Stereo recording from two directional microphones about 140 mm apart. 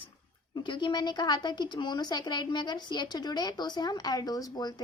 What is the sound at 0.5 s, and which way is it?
A woman's voice, 35° left (ahead or behind).